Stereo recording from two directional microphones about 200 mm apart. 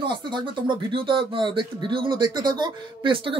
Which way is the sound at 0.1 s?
25° right (ahead or behind).